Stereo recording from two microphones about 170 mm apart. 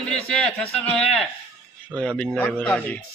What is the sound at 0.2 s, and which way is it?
A man's voice, 5° left (ahead or behind).